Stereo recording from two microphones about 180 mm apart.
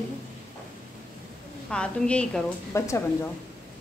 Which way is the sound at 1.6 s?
5° left (ahead or behind).